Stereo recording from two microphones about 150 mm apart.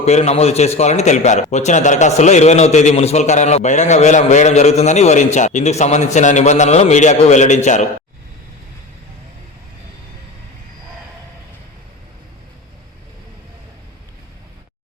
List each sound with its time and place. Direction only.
0.0 s a man's voice: 45° left (ahead or behind)